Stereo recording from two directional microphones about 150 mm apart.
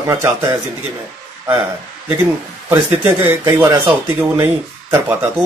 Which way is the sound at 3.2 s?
20° right (ahead or behind).